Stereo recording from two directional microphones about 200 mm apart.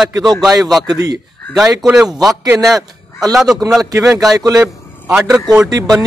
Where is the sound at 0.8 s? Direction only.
20° right (ahead or behind).